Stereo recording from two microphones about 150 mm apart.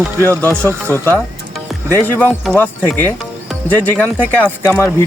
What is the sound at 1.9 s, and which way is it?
Speech, 15° left (ahead or behind).